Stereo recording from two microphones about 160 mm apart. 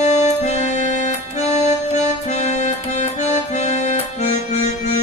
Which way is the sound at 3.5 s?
45° left (ahead or behind).